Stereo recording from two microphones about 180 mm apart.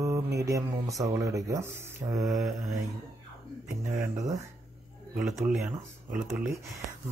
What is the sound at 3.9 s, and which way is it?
Speech, 20° right (ahead or behind).